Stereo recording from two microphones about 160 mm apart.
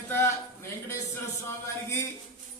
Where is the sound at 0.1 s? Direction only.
15° left (ahead or behind).